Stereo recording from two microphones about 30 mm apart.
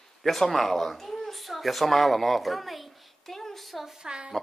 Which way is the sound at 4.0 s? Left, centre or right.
Right.